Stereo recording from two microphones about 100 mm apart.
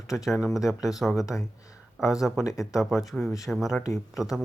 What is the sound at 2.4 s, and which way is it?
Speech, 35° left (ahead or behind).